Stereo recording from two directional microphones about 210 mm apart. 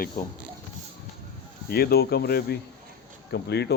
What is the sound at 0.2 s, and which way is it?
Speech, 40° left (ahead or behind).